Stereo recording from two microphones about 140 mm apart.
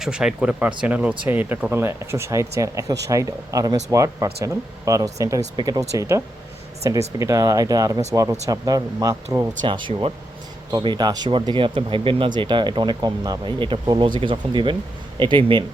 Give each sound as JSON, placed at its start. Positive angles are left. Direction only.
{"t": 0.0, "sound": "speech", "side_deg": -5}
{"t": 9.6, "sound": "speech", "side_deg": -35}